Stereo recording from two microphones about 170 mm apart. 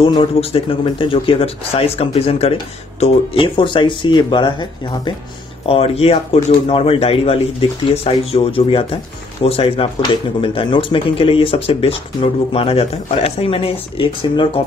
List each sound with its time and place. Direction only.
0.0 s speech: 30° left (ahead or behind)